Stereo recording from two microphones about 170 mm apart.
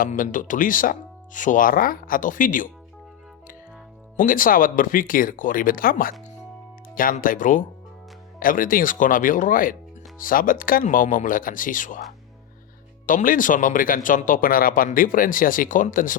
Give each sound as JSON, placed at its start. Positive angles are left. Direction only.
{"t": 0.0, "sound": "speech", "side_deg": 50}
{"t": 4.2, "sound": "speech", "side_deg": 55}
{"t": 13.1, "sound": "speech", "side_deg": 50}